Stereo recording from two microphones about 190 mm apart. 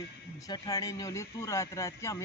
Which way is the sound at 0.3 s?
20° left (ahead or behind).